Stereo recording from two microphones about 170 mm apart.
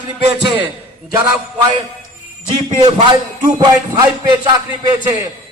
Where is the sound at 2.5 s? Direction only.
30° right (ahead or behind).